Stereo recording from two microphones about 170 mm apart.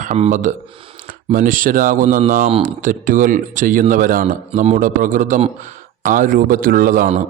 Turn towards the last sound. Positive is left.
turn(degrees=-55)  # may be behind; listen again after turning